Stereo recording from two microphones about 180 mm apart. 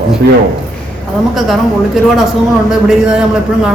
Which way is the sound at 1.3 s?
Centre (ahead or behind).